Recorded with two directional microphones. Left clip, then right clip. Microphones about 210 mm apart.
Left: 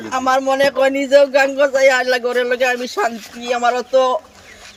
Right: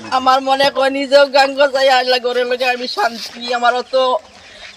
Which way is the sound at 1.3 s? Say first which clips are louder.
Right 2 dB; 20° left (ahead or behind).